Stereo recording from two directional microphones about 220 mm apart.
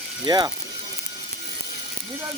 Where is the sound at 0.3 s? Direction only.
20° right (ahead or behind).